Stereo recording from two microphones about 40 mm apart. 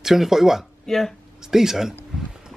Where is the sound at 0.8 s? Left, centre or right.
Centre.